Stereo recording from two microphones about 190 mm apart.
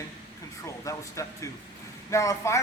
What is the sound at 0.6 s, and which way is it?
Speech, 15° left (ahead or behind).